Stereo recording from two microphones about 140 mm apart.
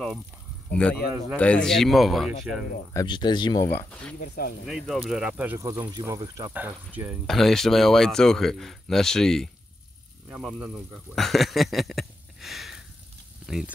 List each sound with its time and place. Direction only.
0.7 s speech: 10° left (ahead or behind)
3.1 s speech: 30° left (ahead or behind)
4.2 s speech: 90° left
4.6 s speech: centre (ahead or behind)
5.6 s speech: 25° right (ahead or behind)
6.5 s speech: 10° right (ahead or behind)
7.2 s speech: centre (ahead or behind)
10.6 s speech: centre (ahead or behind)